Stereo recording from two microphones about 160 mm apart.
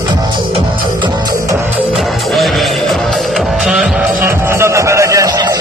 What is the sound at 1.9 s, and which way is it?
Music, centre (ahead or behind).